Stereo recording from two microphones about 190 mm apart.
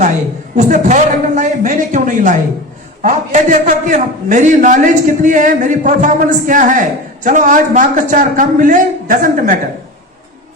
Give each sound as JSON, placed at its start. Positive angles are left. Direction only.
{"t": 0.5, "sound": "a man's voice", "side_deg": -40}